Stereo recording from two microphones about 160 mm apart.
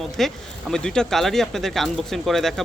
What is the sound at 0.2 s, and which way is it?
A man's voice, centre (ahead or behind).